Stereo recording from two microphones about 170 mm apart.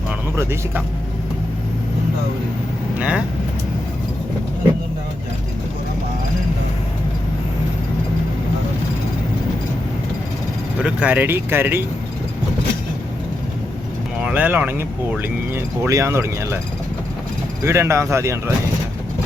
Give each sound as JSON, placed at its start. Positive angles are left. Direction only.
{"t": 3.0, "sound": "speech", "side_deg": -5}
{"t": 10.8, "sound": "speech", "side_deg": -10}
{"t": 14.2, "sound": "speech", "side_deg": -10}
{"t": 17.6, "sound": "speech", "side_deg": -15}